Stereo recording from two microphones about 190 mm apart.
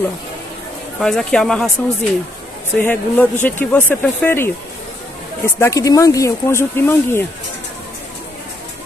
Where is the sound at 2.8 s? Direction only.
10° left (ahead or behind).